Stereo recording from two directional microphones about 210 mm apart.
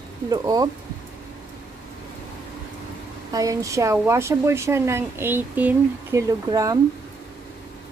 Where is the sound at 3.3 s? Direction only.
15° right (ahead or behind).